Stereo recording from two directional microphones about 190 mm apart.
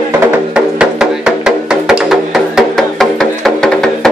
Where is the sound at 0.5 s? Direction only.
5° right (ahead or behind).